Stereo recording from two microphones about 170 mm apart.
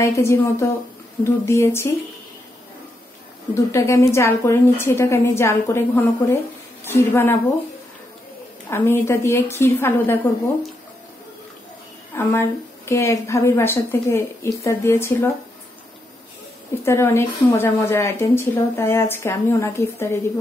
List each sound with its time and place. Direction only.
0.0 s a woman's voice: 15° left (ahead or behind)
3.5 s a woman's voice: 15° left (ahead or behind)
8.6 s a woman's voice: 15° left (ahead or behind)
12.2 s a woman's voice: 15° left (ahead or behind)
16.8 s a woman's voice: 15° left (ahead or behind)